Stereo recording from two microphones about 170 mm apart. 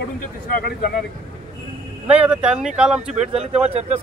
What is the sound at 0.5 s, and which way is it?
Speech, 60° left (ahead or behind).